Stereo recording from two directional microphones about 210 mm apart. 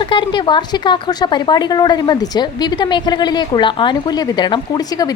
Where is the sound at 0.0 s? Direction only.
20° left (ahead or behind).